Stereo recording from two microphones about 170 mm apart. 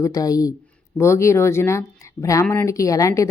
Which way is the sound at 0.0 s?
20° left (ahead or behind).